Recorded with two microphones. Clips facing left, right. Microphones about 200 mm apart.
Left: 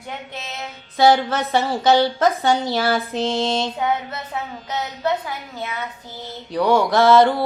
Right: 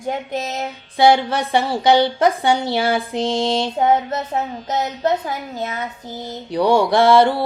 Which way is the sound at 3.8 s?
45° right (ahead or behind).